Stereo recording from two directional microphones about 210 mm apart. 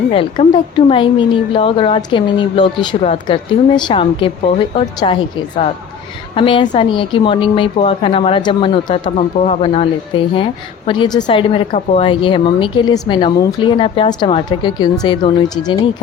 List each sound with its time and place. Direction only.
0.1 s a woman's voice: 25° left (ahead or behind)
6.3 s a woman's voice: 25° left (ahead or behind)